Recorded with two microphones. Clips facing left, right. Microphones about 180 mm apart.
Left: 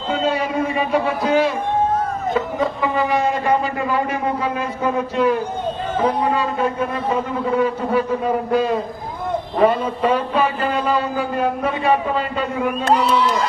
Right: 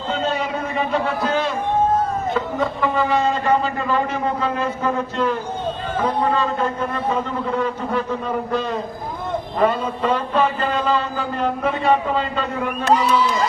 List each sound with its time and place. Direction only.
0.1 s a sound: 10° left (ahead or behind)
2.3 s a man's voice: 15° left (ahead or behind)
12.8 s speech: 55° left (ahead or behind)